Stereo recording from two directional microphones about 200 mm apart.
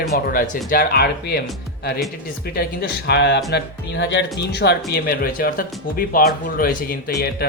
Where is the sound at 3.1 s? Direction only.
60° left (ahead or behind).